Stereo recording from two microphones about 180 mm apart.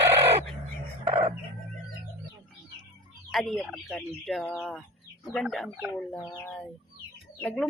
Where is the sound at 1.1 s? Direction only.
40° right (ahead or behind).